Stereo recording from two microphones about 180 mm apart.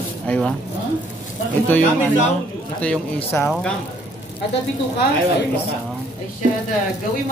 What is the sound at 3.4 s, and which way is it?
Speech, centre (ahead or behind).